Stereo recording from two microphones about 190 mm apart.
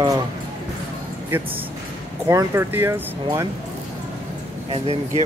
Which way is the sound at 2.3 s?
15° right (ahead or behind).